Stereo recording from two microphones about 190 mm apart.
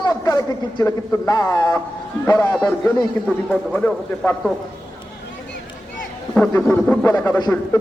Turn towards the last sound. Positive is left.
turn(degrees=15)  # may be behind; listen again after turning